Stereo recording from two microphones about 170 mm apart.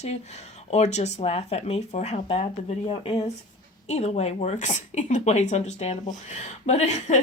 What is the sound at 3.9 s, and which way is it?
Speech, 40° left (ahead or behind).